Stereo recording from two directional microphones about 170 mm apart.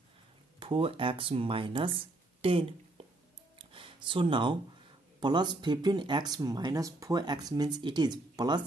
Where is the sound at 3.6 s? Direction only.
30° right (ahead or behind).